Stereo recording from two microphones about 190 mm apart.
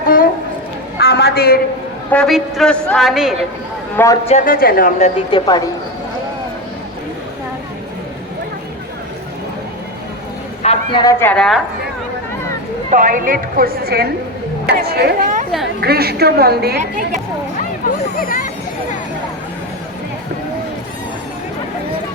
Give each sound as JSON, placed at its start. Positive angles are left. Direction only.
{"t": 0.9, "sound": "a sound", "side_deg": 60}
{"t": 2.0, "sound": "a woman's voice", "side_deg": 5}
{"t": 3.9, "sound": "a man's voice", "side_deg": 15}
{"t": 4.3, "sound": "a woman's voice", "side_deg": 45}
{"t": 5.3, "sound": "a woman's voice", "side_deg": 20}
{"t": 10.6, "sound": "a sound", "side_deg": 30}
{"t": 11.0, "sound": "a woman's voice", "side_deg": 15}
{"t": 12.9, "sound": "a woman's voice", "side_deg": -45}
{"t": 18.2, "sound": "a woman's voice", "side_deg": 50}